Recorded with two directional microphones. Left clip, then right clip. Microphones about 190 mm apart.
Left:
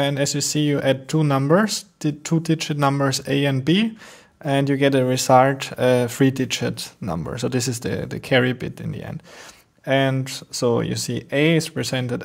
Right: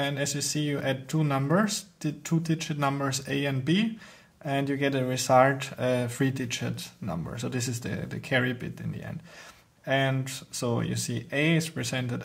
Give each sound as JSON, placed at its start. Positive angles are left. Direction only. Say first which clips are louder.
{"t": 0.0, "sound": "speech", "louder": "left 8 dB", "side_deg": 35}